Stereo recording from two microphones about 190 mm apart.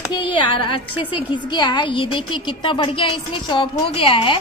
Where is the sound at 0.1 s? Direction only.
25° left (ahead or behind).